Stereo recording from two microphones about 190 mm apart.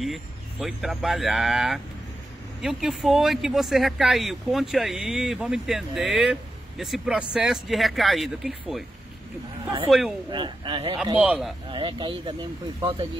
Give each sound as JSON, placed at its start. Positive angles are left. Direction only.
{"t": 0.0, "sound": "speech", "side_deg": 0}
{"t": 9.8, "sound": "speech", "side_deg": 0}
{"t": 10.3, "sound": "speech", "side_deg": -25}
{"t": 11.1, "sound": "speech", "side_deg": -5}
{"t": 11.7, "sound": "speech", "side_deg": -25}